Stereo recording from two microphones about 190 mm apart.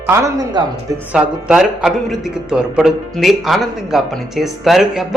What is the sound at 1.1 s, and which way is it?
A man's voice, 5° right (ahead or behind).